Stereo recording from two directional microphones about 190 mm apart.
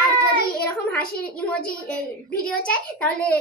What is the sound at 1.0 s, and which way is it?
Speech, 50° left (ahead or behind).